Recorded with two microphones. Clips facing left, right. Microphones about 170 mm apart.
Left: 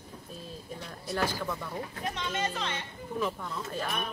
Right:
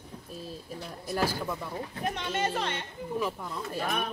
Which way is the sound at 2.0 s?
55° right (ahead or behind).